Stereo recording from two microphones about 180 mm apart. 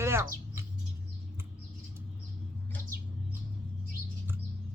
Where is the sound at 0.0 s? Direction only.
15° right (ahead or behind).